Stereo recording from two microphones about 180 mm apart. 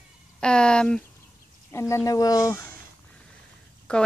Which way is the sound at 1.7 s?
15° left (ahead or behind).